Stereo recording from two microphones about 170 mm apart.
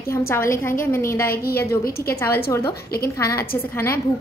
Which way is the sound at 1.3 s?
65° left (ahead or behind).